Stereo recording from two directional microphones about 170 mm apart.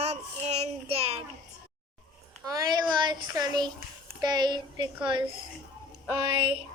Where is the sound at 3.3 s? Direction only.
25° right (ahead or behind).